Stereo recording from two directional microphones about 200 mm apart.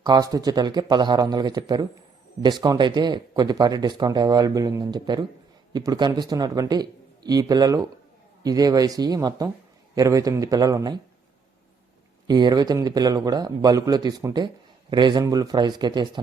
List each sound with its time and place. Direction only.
0.0 s a man's voice: 20° right (ahead or behind)
12.3 s a man's voice: 20° right (ahead or behind)